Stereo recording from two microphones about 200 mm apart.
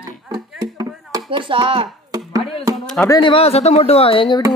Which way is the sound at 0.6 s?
20° right (ahead or behind).